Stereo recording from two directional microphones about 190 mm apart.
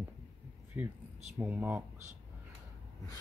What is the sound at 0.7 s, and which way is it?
Speech, 10° right (ahead or behind).